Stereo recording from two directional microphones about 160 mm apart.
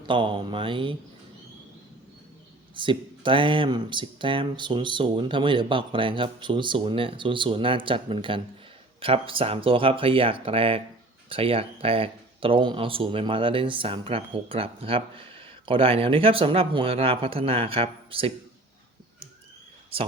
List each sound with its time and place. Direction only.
0.1 s speech: 30° right (ahead or behind)
2.7 s speech: 30° right (ahead or behind)